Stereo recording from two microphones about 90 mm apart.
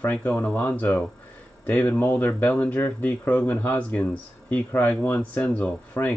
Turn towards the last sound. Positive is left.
turn(degrees=20)  # may be behind; listen again after turning